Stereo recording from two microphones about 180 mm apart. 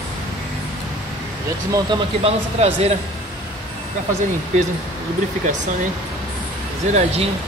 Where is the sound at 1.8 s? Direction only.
35° right (ahead or behind).